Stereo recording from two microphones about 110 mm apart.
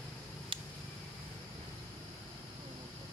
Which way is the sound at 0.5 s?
55° right (ahead or behind).